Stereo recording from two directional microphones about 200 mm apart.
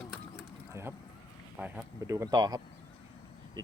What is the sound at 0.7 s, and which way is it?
Vehicle, 15° right (ahead or behind).